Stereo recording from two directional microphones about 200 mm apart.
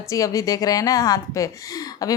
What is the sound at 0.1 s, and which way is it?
Speech, 15° left (ahead or behind).